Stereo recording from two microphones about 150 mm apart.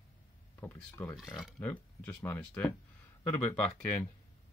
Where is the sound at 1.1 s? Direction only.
Centre (ahead or behind).